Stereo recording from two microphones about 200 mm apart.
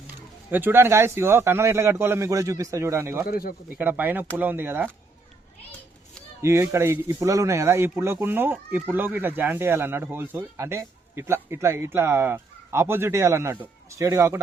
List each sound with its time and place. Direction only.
0.5 s speech: 10° right (ahead or behind)
3.2 s speech: 45° left (ahead or behind)
3.7 s speech: 10° right (ahead or behind)
6.4 s speech: 15° right (ahead or behind)